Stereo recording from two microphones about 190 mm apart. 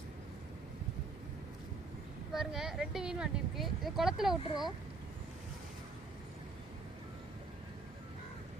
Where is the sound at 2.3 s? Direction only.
Centre (ahead or behind).